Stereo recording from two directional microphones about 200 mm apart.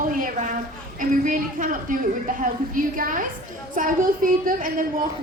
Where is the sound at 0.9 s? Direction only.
40° right (ahead or behind).